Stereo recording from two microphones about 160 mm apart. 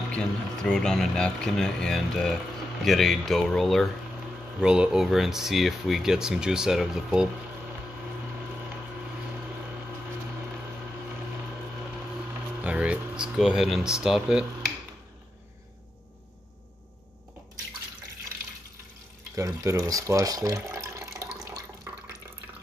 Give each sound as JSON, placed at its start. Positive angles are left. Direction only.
{"t": 0.1, "sound": "speech", "side_deg": 5}
{"t": 12.6, "sound": "speech", "side_deg": -10}
{"t": 19.3, "sound": "speech", "side_deg": -20}